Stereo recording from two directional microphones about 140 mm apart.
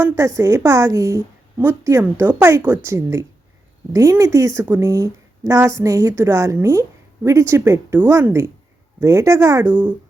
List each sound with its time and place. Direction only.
0.3 s a woman's voice: 20° right (ahead or behind)